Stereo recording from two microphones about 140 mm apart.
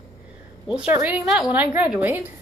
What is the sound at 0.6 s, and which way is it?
Speech, 10° right (ahead or behind).